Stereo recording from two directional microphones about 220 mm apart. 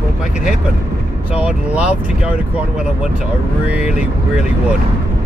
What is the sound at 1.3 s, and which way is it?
Speech, 5° right (ahead or behind).